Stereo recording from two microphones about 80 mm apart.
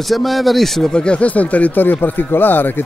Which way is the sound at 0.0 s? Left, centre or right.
Centre.